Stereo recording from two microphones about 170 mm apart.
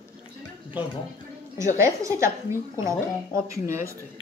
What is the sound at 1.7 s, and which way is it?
A woman's voice, 15° right (ahead or behind).